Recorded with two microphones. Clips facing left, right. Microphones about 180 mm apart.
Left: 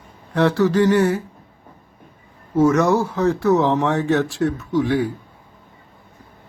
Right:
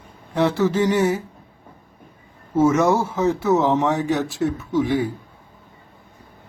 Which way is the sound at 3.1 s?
15° right (ahead or behind).